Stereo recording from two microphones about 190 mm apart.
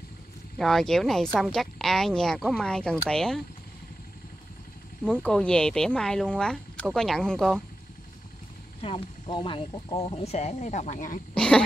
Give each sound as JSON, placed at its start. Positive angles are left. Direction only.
{"t": 0.6, "sound": "speech", "side_deg": 0}
{"t": 5.0, "sound": "speech", "side_deg": 5}
{"t": 8.8, "sound": "speech", "side_deg": 25}
{"t": 11.3, "sound": "dog", "side_deg": 5}